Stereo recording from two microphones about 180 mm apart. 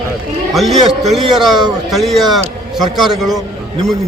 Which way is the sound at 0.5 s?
Centre (ahead or behind).